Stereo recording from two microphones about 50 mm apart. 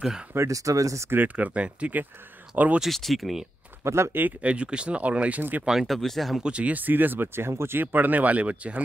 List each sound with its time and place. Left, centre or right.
0.3 s speech: right
1.1 s speech: right
2.9 s speech: centre
3.8 s speech: right
4.4 s speech: right
5.9 s speech: centre
6.4 s speech: right
7.8 s speech: right